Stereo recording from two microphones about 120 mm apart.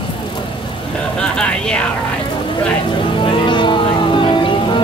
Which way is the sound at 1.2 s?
5° left (ahead or behind).